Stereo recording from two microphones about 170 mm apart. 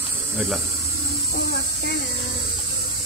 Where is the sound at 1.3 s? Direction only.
75° left (ahead or behind).